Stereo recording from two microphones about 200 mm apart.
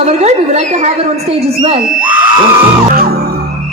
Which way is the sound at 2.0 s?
10° right (ahead or behind).